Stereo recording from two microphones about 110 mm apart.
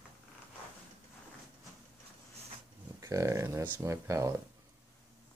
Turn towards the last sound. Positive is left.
turn(degrees=-25)  # may be behind; listen again after turning